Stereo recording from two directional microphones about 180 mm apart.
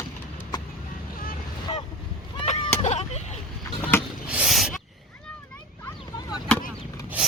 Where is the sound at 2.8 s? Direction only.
35° left (ahead or behind).